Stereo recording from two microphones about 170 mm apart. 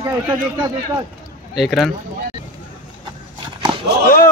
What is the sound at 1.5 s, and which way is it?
Speech, centre (ahead or behind).